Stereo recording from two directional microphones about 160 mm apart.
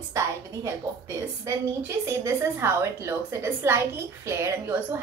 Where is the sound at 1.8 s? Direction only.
15° right (ahead or behind).